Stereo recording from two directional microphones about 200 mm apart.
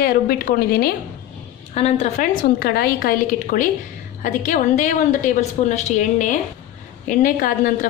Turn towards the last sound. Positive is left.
turn(degrees=45)  # may be behind; listen again after turning